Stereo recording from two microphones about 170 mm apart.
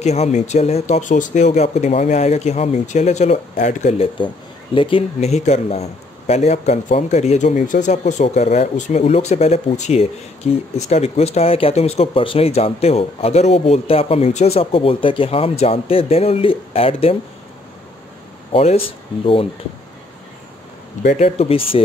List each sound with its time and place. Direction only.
0.0 s speech: 40° left (ahead or behind)
4.7 s speech: 30° left (ahead or behind)
18.5 s speech: 35° left (ahead or behind)
21.2 s speech: 35° left (ahead or behind)